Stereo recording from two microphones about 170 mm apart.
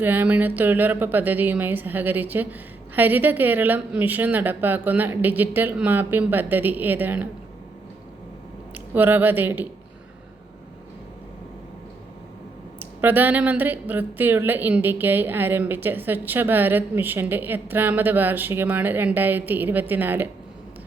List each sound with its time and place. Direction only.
0.0 s speech: 10° right (ahead or behind)
8.7 s speech: 10° right (ahead or behind)
12.8 s speech: 10° right (ahead or behind)